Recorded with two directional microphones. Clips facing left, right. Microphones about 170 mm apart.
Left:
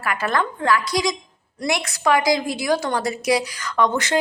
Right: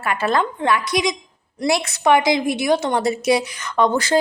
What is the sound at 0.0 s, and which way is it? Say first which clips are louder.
A woman's voice: right 3 dB; 25° right (ahead or behind).